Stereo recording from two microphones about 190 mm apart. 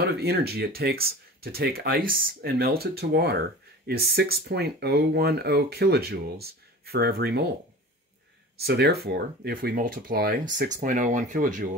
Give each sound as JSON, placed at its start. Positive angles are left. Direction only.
{"t": 0.0, "sound": "speech", "side_deg": -55}
{"t": 8.5, "sound": "speech", "side_deg": -55}